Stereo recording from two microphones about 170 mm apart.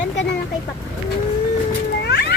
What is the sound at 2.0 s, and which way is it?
Cat, 80° left.